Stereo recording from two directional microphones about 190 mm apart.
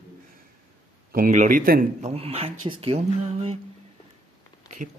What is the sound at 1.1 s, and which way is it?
Speech, 45° right (ahead or behind).